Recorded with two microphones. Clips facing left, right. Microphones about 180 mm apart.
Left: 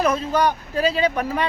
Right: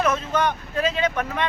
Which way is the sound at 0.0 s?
35° left (ahead or behind).